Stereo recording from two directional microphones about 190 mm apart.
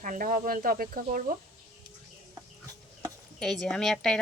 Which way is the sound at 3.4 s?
Centre (ahead or behind).